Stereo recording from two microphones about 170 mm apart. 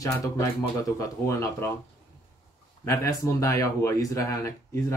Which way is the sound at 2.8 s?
20° left (ahead or behind).